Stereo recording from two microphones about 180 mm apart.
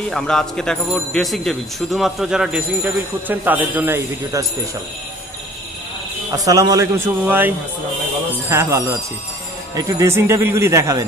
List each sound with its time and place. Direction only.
0.1 s a man's voice: 5° left (ahead or behind); by 4.5 s 15° right (ahead or behind)
6.3 s a man's voice: 20° right (ahead or behind)